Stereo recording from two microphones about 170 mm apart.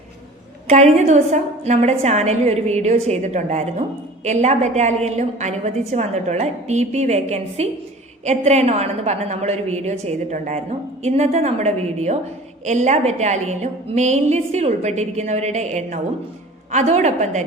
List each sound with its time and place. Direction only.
0.7 s a woman's voice: 40° right (ahead or behind)